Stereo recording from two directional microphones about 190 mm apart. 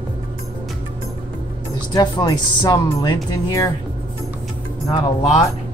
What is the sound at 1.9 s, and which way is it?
Speech, 20° left (ahead or behind).